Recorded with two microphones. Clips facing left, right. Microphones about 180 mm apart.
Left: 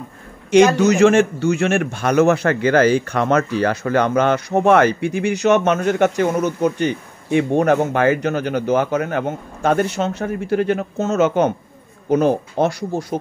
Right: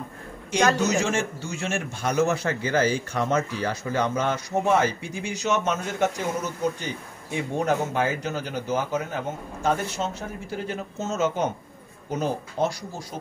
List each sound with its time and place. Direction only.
0.8 s a man's voice: 65° left (ahead or behind)